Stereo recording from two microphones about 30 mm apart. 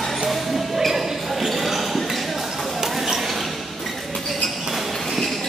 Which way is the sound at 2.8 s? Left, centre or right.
Centre.